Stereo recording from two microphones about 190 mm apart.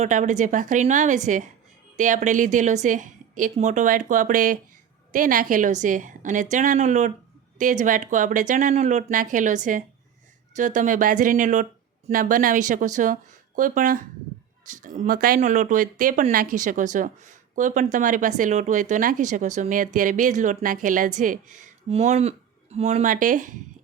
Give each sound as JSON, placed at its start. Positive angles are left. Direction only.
{"t": 0.0, "sound": "speech", "side_deg": -40}